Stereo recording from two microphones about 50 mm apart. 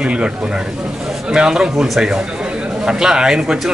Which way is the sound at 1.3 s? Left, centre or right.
Centre.